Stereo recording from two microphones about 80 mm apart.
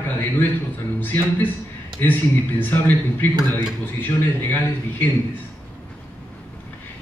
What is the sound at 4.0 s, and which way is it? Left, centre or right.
A man's voice, left.